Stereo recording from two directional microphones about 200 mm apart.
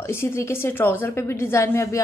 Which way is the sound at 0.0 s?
10° left (ahead or behind).